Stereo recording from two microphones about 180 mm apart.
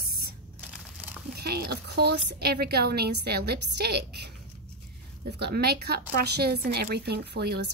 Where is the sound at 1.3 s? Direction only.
60° right (ahead or behind).